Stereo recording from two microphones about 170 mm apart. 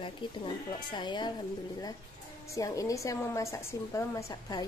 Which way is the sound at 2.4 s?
20° left (ahead or behind).